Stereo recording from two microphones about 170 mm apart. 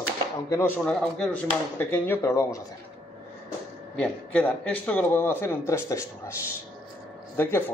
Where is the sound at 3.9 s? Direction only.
5° left (ahead or behind).